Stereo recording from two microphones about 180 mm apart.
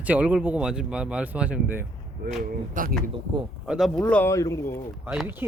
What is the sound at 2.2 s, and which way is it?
Speech, 60° right (ahead or behind).